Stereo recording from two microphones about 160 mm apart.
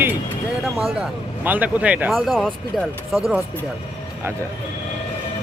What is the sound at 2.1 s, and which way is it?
Speech, centre (ahead or behind).